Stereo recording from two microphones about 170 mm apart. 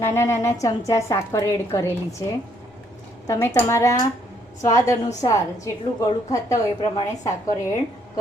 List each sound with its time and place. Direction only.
0.0 s a woman's voice: 15° left (ahead or behind)
3.2 s a woman's voice: 15° left (ahead or behind)